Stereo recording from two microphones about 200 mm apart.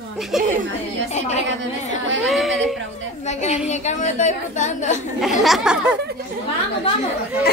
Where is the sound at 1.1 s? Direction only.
35° left (ahead or behind).